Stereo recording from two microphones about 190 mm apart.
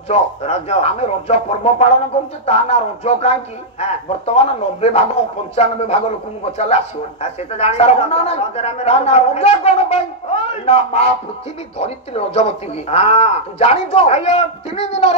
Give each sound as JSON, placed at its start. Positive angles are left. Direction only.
{"t": 0.1, "sound": "speech", "side_deg": 35}